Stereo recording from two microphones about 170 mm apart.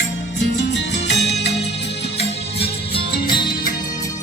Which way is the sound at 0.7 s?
90° left.